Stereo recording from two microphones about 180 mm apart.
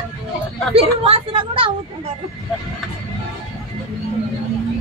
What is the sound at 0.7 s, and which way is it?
Speech, 30° right (ahead or behind).